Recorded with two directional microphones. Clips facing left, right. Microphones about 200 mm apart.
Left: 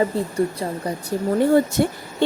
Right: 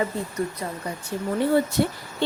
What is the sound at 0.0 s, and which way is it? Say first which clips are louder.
Speech: left 6 dB; 30° left (ahead or behind).